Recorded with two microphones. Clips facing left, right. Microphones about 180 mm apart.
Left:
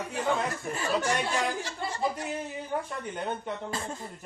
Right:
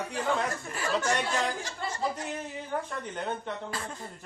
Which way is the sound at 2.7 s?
10° left (ahead or behind).